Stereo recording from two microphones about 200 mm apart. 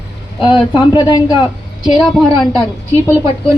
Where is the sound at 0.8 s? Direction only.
20° left (ahead or behind).